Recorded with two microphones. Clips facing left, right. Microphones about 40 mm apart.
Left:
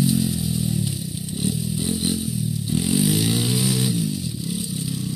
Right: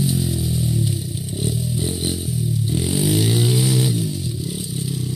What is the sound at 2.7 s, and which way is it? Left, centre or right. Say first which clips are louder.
Vehicle: even; right.